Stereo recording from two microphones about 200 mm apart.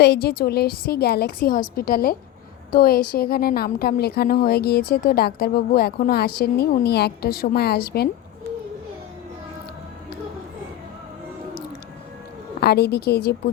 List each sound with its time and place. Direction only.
0.0 s a woman's voice: 55° left (ahead or behind)
12.5 s a woman's voice: 55° left (ahead or behind)